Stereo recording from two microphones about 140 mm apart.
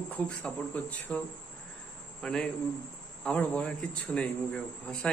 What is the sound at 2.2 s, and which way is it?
A man's voice, 5° left (ahead or behind).